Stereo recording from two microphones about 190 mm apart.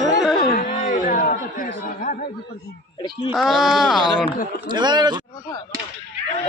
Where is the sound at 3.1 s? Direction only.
Centre (ahead or behind).